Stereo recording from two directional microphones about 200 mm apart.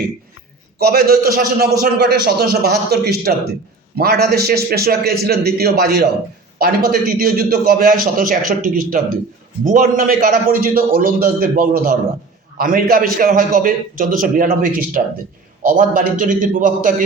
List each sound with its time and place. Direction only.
0.8 s a man's voice: 50° right (ahead or behind)